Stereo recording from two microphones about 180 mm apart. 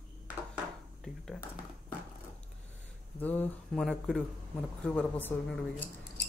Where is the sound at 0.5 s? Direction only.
Centre (ahead or behind).